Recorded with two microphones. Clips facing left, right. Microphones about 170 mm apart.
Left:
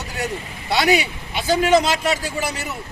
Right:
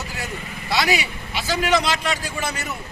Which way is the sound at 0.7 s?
60° left (ahead or behind).